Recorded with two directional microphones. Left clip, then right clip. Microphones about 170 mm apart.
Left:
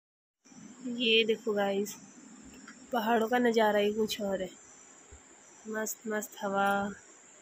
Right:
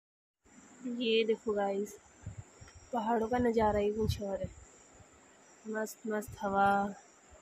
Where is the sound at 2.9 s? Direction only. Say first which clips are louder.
Left 4 dB; 5° left (ahead or behind).